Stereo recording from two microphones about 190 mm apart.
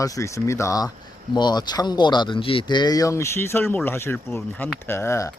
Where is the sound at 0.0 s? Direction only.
15° left (ahead or behind).